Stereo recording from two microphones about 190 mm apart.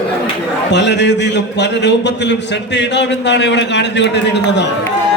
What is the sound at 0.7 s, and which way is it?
A man's voice, 65° left (ahead or behind).